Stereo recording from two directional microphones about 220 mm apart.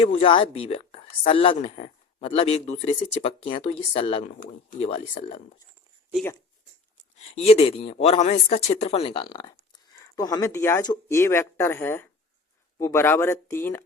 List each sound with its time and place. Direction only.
0.0 s speech: 25° left (ahead or behind)
7.3 s speech: 30° left (ahead or behind); by 13.8 s 10° left (ahead or behind)